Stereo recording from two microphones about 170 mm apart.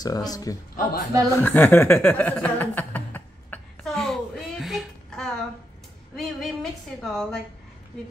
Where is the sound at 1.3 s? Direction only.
10° left (ahead or behind).